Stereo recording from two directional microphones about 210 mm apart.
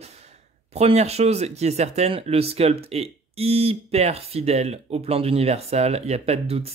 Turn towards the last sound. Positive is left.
turn(degrees=-30)  # may be behind; listen again after turning